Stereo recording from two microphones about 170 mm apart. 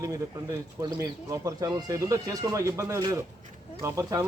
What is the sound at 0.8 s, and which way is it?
Speech, 20° right (ahead or behind).